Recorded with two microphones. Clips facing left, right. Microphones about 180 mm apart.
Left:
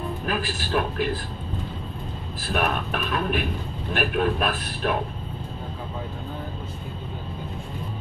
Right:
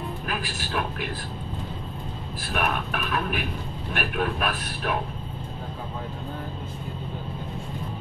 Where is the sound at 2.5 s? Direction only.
35° left (ahead or behind).